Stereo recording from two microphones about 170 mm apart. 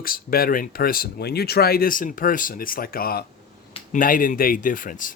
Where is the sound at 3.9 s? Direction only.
50° left (ahead or behind).